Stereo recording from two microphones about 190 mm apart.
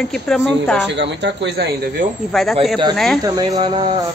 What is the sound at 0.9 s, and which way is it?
Speech, 70° right (ahead or behind).